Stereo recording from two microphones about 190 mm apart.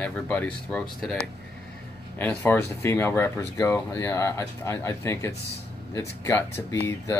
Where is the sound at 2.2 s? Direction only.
10° left (ahead or behind).